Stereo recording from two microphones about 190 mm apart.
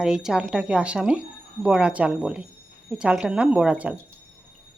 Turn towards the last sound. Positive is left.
turn(degrees=-5)  # may be behind; listen again after turning